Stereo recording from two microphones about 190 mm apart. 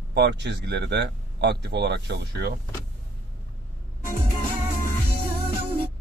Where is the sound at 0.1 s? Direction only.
60° right (ahead or behind).